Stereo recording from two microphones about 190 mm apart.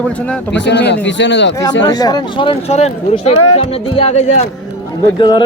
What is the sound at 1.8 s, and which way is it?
Speech, 20° left (ahead or behind).